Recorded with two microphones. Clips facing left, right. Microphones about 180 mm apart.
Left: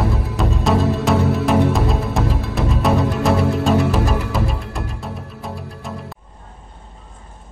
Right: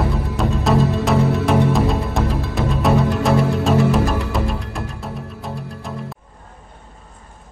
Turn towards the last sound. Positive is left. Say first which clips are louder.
# right 1 dB
turn(degrees=0)  # may be behind; listen again after turning